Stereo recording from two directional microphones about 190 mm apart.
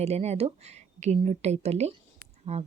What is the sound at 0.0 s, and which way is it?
Speech, 35° right (ahead or behind).